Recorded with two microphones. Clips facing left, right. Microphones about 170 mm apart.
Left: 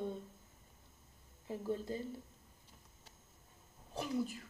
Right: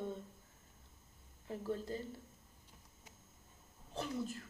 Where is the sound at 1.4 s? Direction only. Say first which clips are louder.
Left 1 dB; 15° left (ahead or behind).